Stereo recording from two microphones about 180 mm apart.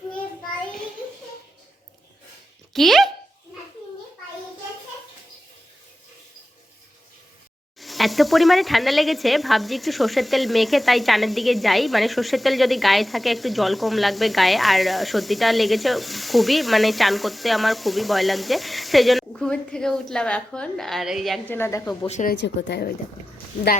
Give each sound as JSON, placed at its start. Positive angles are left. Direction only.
{"t": 2.7, "sound": "speech", "side_deg": 0}
{"t": 7.8, "sound": "speech", "side_deg": 0}
{"t": 22.0, "sound": "speech", "side_deg": 40}
{"t": 22.3, "sound": "speech", "side_deg": 75}